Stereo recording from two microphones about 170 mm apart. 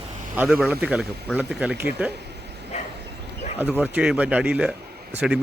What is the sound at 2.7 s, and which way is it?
Bow-wow, 40° left (ahead or behind).